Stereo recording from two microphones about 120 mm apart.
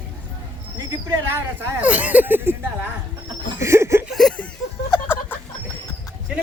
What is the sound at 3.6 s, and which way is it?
Chuckle, 25° right (ahead or behind).